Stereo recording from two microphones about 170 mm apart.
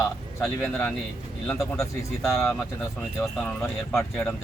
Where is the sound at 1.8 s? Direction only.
15° left (ahead or behind).